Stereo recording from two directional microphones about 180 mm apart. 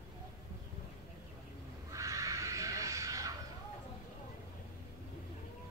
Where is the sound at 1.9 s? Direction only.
15° right (ahead or behind).